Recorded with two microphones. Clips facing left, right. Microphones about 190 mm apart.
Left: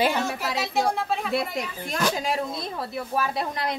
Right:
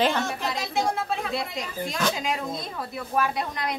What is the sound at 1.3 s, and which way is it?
Speech, 60° left (ahead or behind).